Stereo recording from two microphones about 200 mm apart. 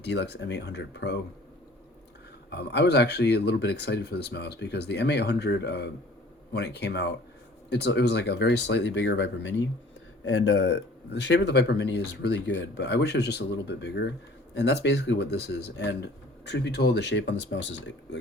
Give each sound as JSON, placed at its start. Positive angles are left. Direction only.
{"t": 0.0, "sound": "speech", "side_deg": 60}
{"t": 2.5, "sound": "speech", "side_deg": 55}
{"t": 10.2, "sound": "speech", "side_deg": 90}